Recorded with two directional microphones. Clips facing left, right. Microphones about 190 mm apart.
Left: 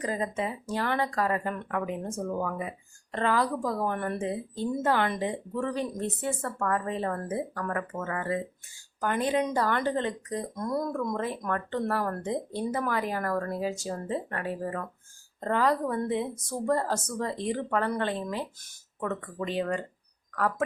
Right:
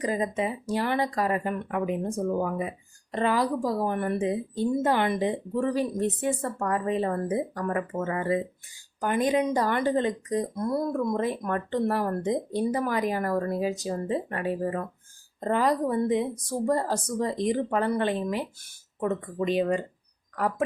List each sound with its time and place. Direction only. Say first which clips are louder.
0.0 s speech: right 3 dB; 15° right (ahead or behind)